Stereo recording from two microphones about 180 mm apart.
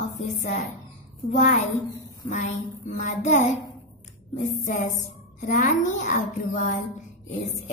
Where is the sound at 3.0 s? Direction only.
40° left (ahead or behind).